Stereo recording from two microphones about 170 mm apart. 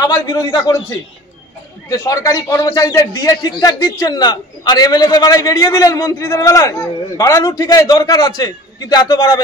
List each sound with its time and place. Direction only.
0.0 s a man's voice: 20° left (ahead or behind)
1.9 s a man's voice: 20° left (ahead or behind)